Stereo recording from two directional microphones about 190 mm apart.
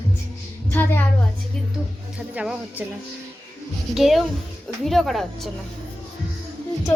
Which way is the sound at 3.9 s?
Centre (ahead or behind).